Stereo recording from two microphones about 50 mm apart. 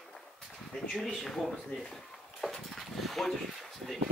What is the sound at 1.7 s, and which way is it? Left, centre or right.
Speech, left.